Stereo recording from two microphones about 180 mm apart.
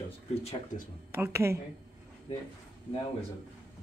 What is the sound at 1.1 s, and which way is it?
Speech, 15° right (ahead or behind).